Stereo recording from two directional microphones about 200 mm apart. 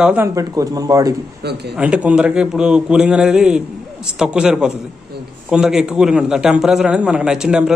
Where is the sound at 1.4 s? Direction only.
55° right (ahead or behind).